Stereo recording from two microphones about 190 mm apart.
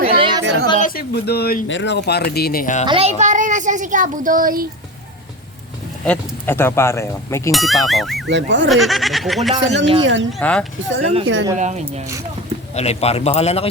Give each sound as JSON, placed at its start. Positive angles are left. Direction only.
{"t": 0.0, "sound": "a sound", "side_deg": -30}
{"t": 0.8, "sound": "speech", "side_deg": 50}
{"t": 1.6, "sound": "speech", "side_deg": 75}
{"t": 2.8, "sound": "speech", "side_deg": -30}
{"t": 6.1, "sound": "speech", "side_deg": 10}
{"t": 7.5, "sound": "speech", "side_deg": 0}
{"t": 8.3, "sound": "speech", "side_deg": -75}
{"t": 8.7, "sound": "speech", "side_deg": 0}
{"t": 9.6, "sound": "speech", "side_deg": -70}
{"t": 10.3, "sound": "speech", "side_deg": 5}
{"t": 11.0, "sound": "speech", "side_deg": -35}
{"t": 12.7, "sound": "a man's voice", "side_deg": 35}